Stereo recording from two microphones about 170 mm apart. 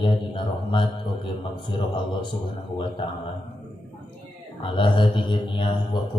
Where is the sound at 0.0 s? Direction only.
30° left (ahead or behind).